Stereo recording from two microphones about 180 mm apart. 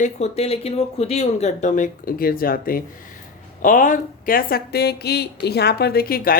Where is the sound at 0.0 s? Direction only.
35° left (ahead or behind).